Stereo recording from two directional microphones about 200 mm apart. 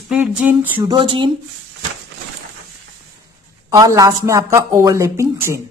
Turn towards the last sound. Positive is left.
turn(degrees=-15)  # may be behind; listen again after turning